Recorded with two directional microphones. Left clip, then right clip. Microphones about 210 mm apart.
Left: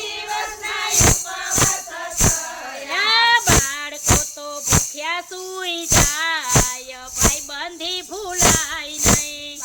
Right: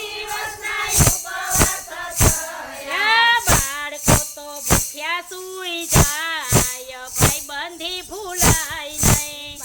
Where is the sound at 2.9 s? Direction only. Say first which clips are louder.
Even; 20° left (ahead or behind).